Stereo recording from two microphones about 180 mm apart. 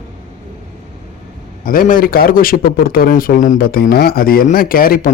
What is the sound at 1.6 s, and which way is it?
A man's voice, 50° left (ahead or behind).